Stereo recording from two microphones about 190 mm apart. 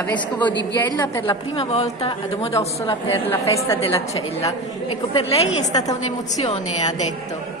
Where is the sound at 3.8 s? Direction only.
30° left (ahead or behind).